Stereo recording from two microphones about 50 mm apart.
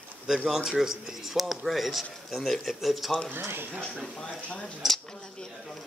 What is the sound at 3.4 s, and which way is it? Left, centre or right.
Speech, right.